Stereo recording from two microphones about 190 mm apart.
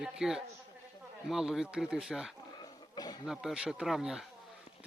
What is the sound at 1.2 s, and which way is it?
Speech, centre (ahead or behind).